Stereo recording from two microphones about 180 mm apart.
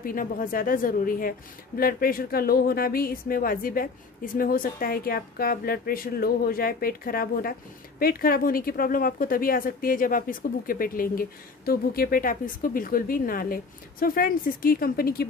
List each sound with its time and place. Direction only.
0.0 s speech: 50° left (ahead or behind)